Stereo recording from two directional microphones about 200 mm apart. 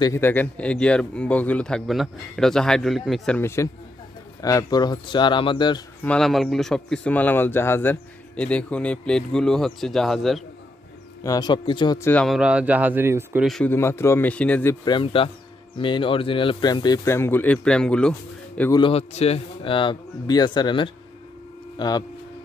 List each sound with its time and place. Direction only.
0.0 s a man's voice: 10° left (ahead or behind)
6.0 s a man's voice: 5° left (ahead or behind)
11.2 s speech: 20° left (ahead or behind)
12.1 s a man's voice: 5° left (ahead or behind)
12.4 s speech: 5° right (ahead or behind)
13.5 s a man's voice: 5° left (ahead or behind)
14.9 s speech: 25° left (ahead or behind); by 18.1 s 5° left (ahead or behind)
18.8 s speech: 30° left (ahead or behind)